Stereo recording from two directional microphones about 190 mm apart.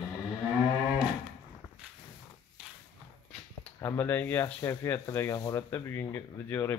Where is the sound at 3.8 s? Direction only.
15° left (ahead or behind).